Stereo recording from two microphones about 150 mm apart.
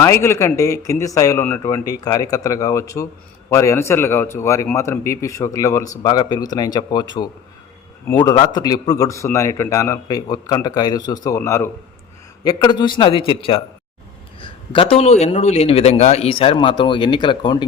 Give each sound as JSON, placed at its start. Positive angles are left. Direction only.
{"t": 0.0, "sound": "a man's voice", "side_deg": 20}